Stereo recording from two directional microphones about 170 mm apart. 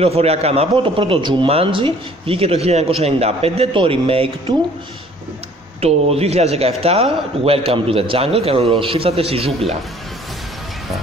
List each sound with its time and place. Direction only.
0.0 s a man's voice: 35° right (ahead or behind)
5.8 s a man's voice: 35° right (ahead or behind)